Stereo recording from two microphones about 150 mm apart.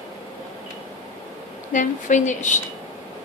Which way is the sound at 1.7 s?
55° left (ahead or behind).